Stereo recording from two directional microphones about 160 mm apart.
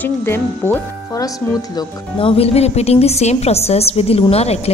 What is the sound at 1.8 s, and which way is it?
A woman's voice, 35° left (ahead or behind).